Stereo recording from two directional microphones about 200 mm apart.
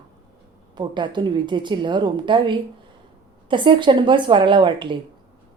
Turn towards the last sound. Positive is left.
turn(degrees=-25)  # may be behind; listen again after turning